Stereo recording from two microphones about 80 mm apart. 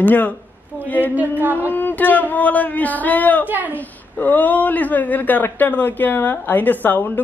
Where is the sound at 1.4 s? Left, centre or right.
Right.